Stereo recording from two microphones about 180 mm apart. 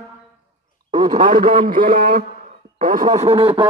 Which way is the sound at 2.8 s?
45° right (ahead or behind).